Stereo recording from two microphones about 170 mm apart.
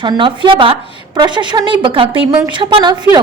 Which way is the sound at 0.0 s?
25° right (ahead or behind).